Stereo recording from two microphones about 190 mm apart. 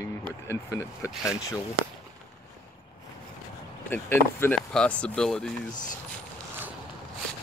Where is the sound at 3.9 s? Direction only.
10° left (ahead or behind).